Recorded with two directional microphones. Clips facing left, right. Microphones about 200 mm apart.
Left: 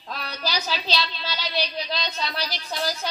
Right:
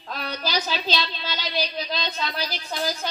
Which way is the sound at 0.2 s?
50° right (ahead or behind).